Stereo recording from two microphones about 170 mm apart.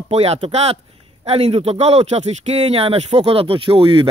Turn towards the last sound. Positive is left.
turn(degrees=-30)  # may be behind; listen again after turning